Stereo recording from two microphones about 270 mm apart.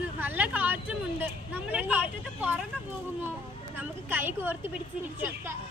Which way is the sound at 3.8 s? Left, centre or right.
Centre.